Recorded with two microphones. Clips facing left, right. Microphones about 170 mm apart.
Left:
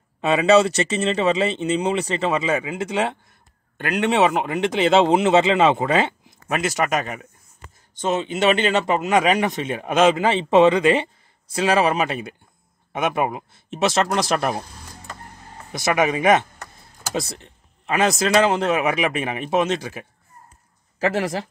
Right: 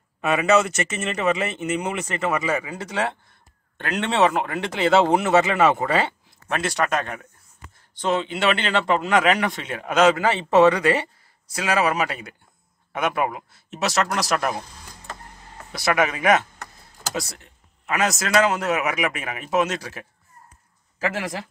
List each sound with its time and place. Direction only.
0.2 s speech: 30° left (ahead or behind)
3.7 s speech: 10° left (ahead or behind)
7.6 s speech: 20° left (ahead or behind)
15.7 s speech: 20° left (ahead or behind)
21.0 s speech: 35° left (ahead or behind)